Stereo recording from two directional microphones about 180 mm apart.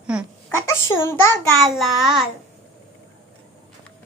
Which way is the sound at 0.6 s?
15° left (ahead or behind).